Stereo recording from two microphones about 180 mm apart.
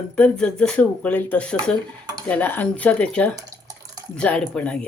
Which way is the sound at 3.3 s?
20° right (ahead or behind).